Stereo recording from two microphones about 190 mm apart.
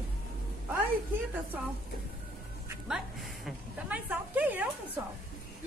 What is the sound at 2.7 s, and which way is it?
A woman's voice, centre (ahead or behind).